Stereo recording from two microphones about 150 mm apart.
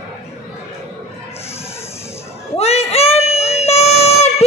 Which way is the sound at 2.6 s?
45° left (ahead or behind).